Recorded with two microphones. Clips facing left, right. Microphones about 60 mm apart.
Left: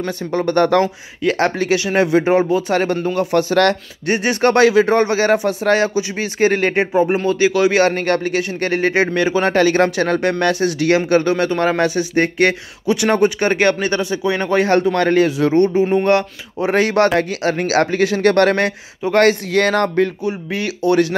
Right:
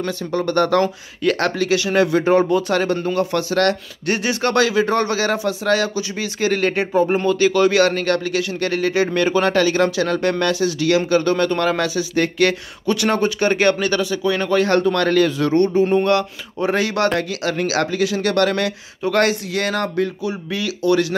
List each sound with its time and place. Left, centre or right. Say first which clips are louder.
0.0 s speech: left 2 dB; left
0.8 s speech: even; centre
1.6 s speech: left 1 dB; left
2.7 s speech: left 1 dB; left
6.9 s speech: left 1 dB; centre
7.7 s speech: left 1 dB; left
9.1 s speech: left 1 dB; centre
9.4 s speech: left 3 dB; left
11.2 s speech: left 1 dB; centre
11.6 s speech: left 3 dB; left